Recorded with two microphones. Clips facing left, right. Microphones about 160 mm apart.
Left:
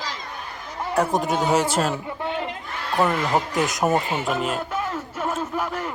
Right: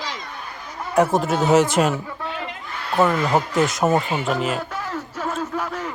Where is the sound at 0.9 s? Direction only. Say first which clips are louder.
Right 3 dB; 5° right (ahead or behind).